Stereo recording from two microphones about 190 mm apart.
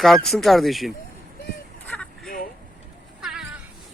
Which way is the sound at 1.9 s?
5° left (ahead or behind).